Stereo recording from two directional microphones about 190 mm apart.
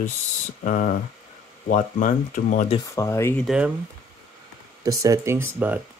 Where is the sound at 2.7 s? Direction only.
15° left (ahead or behind).